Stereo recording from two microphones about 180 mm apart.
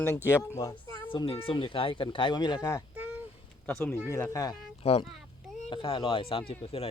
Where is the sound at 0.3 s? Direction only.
15° left (ahead or behind).